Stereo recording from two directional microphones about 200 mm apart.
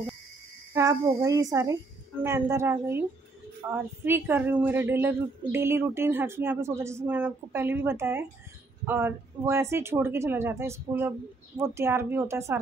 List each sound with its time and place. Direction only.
0.7 s a woman's voice: 15° right (ahead or behind)